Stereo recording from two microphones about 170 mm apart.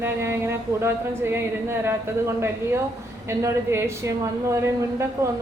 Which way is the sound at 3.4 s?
15° right (ahead or behind).